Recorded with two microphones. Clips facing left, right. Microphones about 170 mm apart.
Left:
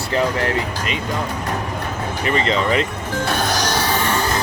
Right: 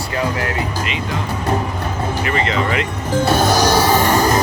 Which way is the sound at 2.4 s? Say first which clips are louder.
Left 1 dB; 35° left (ahead or behind).